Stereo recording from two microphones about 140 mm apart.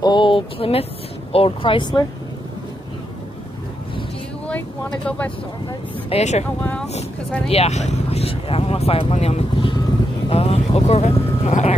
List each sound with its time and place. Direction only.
0.0 s speech: 35° left (ahead or behind)
4.5 s speech: 10° left (ahead or behind)
6.0 s speech: 50° left (ahead or behind)
6.6 s speech: 10° left (ahead or behind)
7.4 s speech: 50° left (ahead or behind)